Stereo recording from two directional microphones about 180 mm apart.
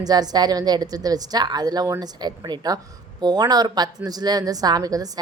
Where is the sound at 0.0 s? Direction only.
20° right (ahead or behind).